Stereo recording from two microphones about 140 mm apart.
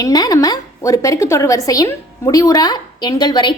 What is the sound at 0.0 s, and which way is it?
A woman's voice, 25° left (ahead or behind).